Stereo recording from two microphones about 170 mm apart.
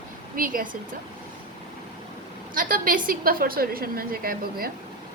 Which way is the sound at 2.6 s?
55° right (ahead or behind).